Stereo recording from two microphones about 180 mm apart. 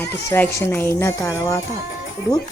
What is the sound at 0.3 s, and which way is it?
Speech, 10° left (ahead or behind).